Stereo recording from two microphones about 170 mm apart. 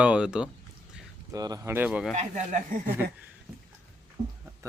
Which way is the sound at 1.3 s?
20° right (ahead or behind).